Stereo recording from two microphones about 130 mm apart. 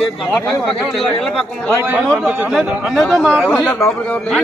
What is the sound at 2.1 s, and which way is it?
A man's voice, 10° right (ahead or behind).